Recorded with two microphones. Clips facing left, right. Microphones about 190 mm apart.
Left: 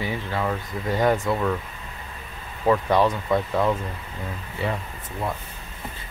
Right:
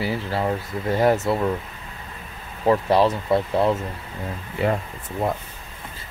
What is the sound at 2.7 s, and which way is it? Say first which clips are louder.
Speech: right 2 dB; 30° right (ahead or behind).